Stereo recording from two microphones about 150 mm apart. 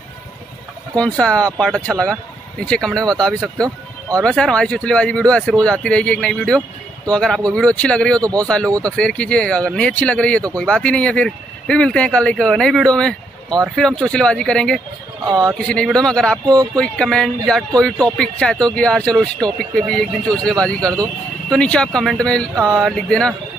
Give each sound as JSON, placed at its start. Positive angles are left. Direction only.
{"t": 0.9, "sound": "speech", "side_deg": 5}
{"t": 8.2, "sound": "a man's voice", "side_deg": -25}
{"t": 8.8, "sound": "speech", "side_deg": 5}
{"t": 15.2, "sound": "a man's voice", "side_deg": -25}
{"t": 15.5, "sound": "speech", "side_deg": 5}